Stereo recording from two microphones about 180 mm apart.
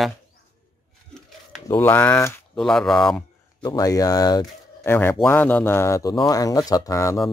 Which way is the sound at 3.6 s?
20° left (ahead or behind).